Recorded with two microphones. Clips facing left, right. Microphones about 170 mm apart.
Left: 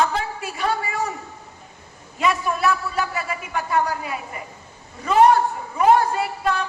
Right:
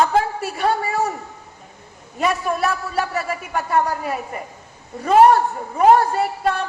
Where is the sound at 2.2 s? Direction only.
45° right (ahead or behind).